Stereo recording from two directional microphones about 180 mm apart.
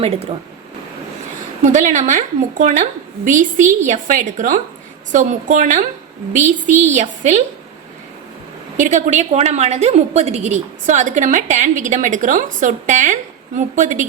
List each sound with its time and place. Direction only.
1.6 s a woman's voice: 45° right (ahead or behind)
8.8 s a woman's voice: 45° right (ahead or behind)